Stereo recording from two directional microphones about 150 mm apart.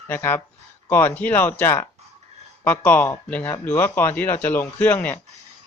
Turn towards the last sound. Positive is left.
turn(degrees=10)  # may be behind; listen again after turning